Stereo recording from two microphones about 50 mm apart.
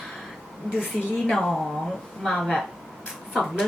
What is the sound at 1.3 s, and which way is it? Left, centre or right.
A woman's voice, centre.